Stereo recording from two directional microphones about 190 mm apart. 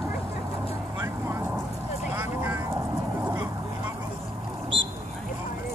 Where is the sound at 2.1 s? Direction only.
15° right (ahead or behind).